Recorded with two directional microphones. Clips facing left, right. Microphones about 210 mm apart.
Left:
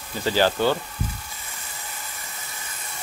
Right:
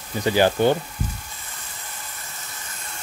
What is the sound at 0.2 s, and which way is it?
Speech, 15° right (ahead or behind).